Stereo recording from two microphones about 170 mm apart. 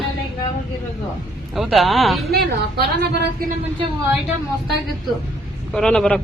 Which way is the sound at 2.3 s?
70° right (ahead or behind).